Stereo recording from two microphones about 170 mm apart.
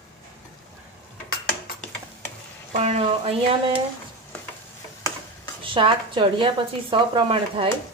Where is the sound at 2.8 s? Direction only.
35° right (ahead or behind).